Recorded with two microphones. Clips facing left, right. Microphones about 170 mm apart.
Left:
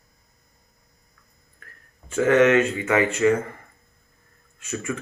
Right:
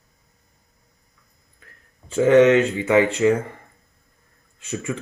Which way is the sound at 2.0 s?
30° right (ahead or behind).